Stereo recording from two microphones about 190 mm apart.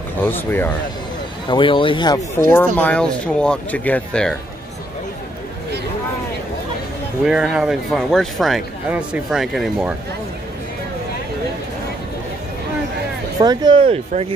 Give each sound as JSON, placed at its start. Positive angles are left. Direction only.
{"t": 0.2, "sound": "speech", "side_deg": 10}
{"t": 1.5, "sound": "speech", "side_deg": 25}
{"t": 2.5, "sound": "speech", "side_deg": 10}
{"t": 7.2, "sound": "speech", "side_deg": -5}
{"t": 13.4, "sound": "speech", "side_deg": -20}